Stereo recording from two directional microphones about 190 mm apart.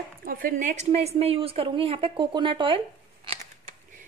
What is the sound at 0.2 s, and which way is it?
A woman's voice, 50° right (ahead or behind).